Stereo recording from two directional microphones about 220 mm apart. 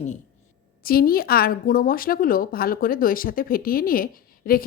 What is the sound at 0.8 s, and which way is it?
A woman's voice, 40° left (ahead or behind).